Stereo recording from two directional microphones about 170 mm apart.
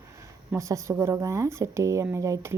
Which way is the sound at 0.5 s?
15° right (ahead or behind).